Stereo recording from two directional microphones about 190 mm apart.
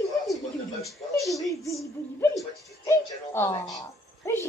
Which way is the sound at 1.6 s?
15° left (ahead or behind).